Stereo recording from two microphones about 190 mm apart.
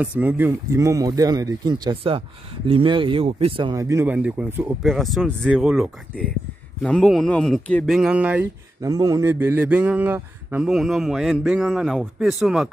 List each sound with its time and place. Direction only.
0.0 s speech: 10° right (ahead or behind); by 3.8 s 25° right (ahead or behind)
3.8 s speech: 10° right (ahead or behind)
4.8 s speech: centre (ahead or behind)